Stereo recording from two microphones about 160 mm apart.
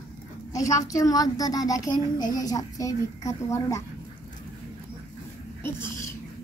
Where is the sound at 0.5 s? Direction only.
20° left (ahead or behind).